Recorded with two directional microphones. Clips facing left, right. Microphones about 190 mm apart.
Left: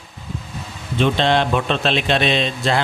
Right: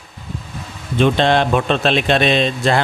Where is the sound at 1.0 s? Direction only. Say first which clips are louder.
Right 3 dB; 50° right (ahead or behind).